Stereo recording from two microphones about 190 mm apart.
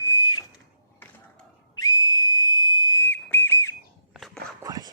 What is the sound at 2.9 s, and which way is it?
Whistle, 15° left (ahead or behind).